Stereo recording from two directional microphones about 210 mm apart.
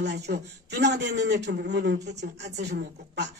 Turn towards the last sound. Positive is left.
turn(degrees=-55)  # may be behind; listen again after turning